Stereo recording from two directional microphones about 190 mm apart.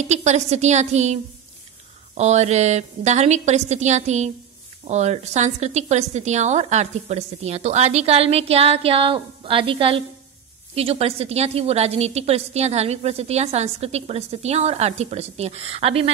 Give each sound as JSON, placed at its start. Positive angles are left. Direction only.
{"t": 0.0, "sound": "a woman's voice", "side_deg": -35}